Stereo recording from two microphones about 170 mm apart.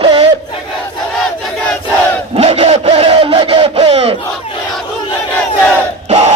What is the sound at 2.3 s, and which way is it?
Battle cry, 35° right (ahead or behind).